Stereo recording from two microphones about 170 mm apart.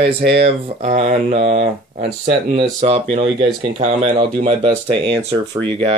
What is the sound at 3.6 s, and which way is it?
Speech, 40° right (ahead or behind).